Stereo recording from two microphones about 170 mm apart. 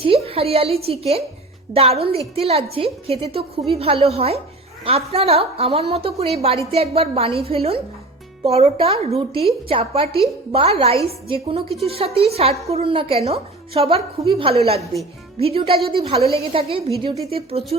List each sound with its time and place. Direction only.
0.0 s a woman's voice: 35° right (ahead or behind)